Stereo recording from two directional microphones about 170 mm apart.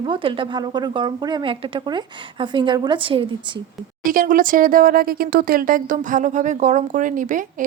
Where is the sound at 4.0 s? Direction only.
55° right (ahead or behind).